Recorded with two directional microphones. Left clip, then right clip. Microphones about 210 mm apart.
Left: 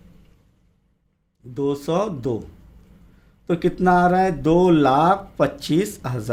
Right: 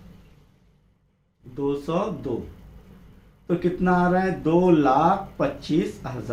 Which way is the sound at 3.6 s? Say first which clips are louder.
Left 6 dB; 40° left (ahead or behind).